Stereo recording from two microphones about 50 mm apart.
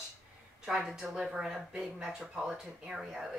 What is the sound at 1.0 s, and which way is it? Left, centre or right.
Speech, centre.